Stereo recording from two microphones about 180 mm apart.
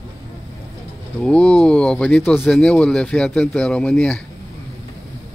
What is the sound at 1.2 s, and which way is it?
Speech, 5° left (ahead or behind).